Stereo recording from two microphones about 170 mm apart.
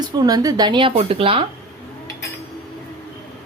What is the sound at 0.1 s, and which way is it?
Speech, 25° right (ahead or behind).